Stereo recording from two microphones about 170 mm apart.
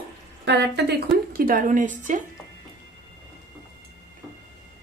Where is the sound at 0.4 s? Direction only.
85° right; by 2.2 s 50° right (ahead or behind).